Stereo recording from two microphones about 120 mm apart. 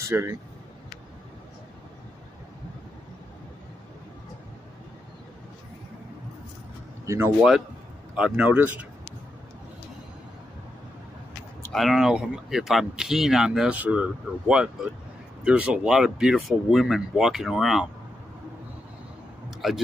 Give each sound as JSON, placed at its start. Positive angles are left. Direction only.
{"t": 0.1, "sound": "speech", "side_deg": -25}
{"t": 7.1, "sound": "speech", "side_deg": -25}
{"t": 8.2, "sound": "speech", "side_deg": -15}
{"t": 11.7, "sound": "speech", "side_deg": 0}
{"t": 19.6, "sound": "speech", "side_deg": 0}